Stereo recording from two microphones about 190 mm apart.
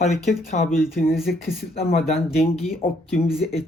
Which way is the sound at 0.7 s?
Centre (ahead or behind).